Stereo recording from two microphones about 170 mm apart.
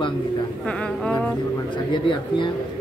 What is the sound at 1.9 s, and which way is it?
Speech, 30° left (ahead or behind).